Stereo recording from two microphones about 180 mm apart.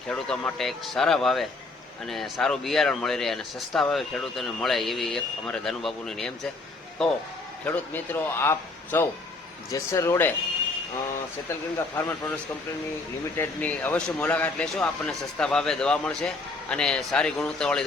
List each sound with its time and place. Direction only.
0.1 s a man's voice: 5° left (ahead or behind)
11.9 s a man's voice: 10° left (ahead or behind)
13.3 s speech: 10° left (ahead or behind)